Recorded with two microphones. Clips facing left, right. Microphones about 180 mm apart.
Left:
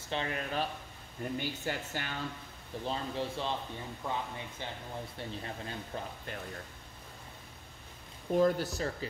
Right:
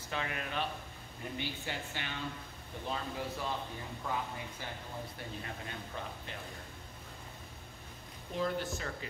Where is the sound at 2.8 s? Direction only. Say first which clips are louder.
Left 3 dB; 25° left (ahead or behind).